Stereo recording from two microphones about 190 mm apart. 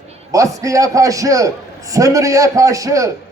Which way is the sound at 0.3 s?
15° right (ahead or behind).